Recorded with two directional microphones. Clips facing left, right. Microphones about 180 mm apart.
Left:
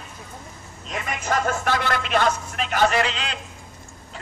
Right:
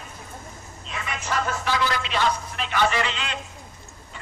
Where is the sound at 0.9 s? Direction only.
45° left (ahead or behind).